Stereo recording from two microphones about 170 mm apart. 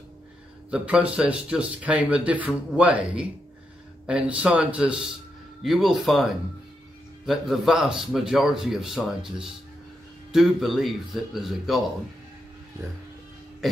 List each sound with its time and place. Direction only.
0.7 s a man's voice: 5° right (ahead or behind)